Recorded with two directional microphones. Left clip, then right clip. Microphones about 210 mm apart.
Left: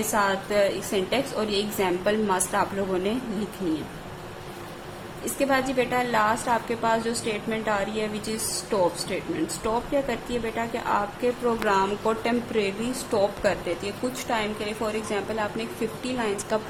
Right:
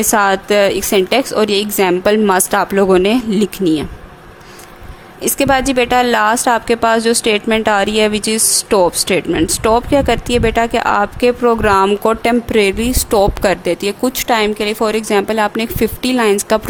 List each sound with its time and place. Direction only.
0.1 s a woman's voice: 55° right (ahead or behind)
5.2 s a woman's voice: 55° right (ahead or behind)